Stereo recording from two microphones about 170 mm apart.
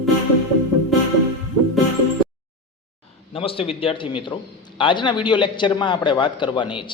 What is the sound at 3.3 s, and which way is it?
A man's voice, 35° left (ahead or behind).